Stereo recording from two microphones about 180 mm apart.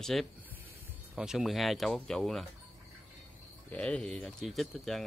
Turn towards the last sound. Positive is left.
turn(degrees=0)  # may be behind; listen again after turning